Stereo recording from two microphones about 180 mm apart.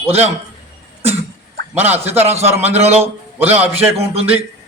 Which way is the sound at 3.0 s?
10° right (ahead or behind).